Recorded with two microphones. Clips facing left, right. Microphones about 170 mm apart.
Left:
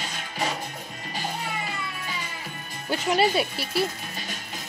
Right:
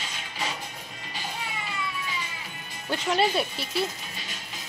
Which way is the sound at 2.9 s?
5° left (ahead or behind).